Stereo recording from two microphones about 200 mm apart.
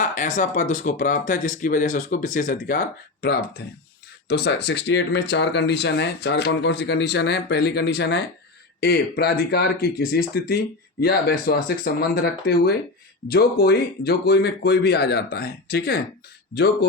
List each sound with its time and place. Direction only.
0.0 s speech: 40° left (ahead or behind)